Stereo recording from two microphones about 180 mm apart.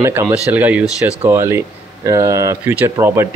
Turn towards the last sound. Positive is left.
turn(degrees=-15)  # may be behind; listen again after turning